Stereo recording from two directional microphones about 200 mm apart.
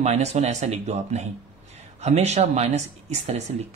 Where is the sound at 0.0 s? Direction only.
35° right (ahead or behind).